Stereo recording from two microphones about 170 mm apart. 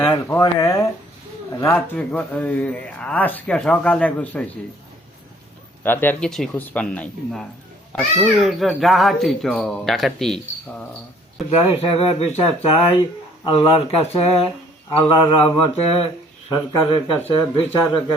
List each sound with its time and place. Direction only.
0.0 s speech: 15° left (ahead or behind)
5.8 s speech: 10° left (ahead or behind)
7.9 s speech: 10° right (ahead or behind)
11.5 s speech: 35° left (ahead or behind)